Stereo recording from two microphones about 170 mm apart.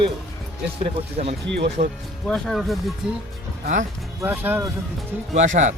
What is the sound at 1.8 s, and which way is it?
Speech, 45° right (ahead or behind).